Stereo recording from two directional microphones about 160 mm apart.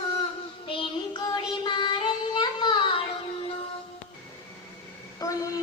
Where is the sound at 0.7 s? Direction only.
30° left (ahead or behind).